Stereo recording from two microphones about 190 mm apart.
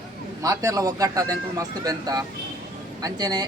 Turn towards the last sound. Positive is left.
turn(degrees=-20)  # may be behind; listen again after turning